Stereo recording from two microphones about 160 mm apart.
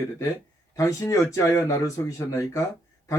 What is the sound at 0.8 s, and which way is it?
Speech, 20° left (ahead or behind).